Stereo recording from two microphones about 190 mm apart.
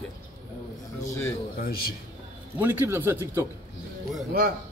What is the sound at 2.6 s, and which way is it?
Speech, 10° right (ahead or behind).